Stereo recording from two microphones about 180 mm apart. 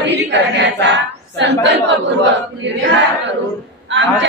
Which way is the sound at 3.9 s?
90° right.